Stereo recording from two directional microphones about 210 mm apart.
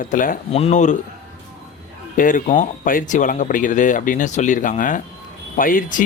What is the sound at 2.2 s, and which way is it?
Speech, 40° left (ahead or behind).